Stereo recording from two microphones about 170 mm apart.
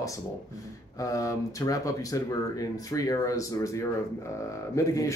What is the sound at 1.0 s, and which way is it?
Speech, 20° left (ahead or behind).